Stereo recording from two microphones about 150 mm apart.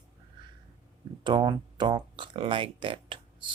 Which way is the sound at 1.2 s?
30° right (ahead or behind).